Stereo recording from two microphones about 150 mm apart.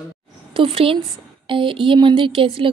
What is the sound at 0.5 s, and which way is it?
Speech, 35° right (ahead or behind).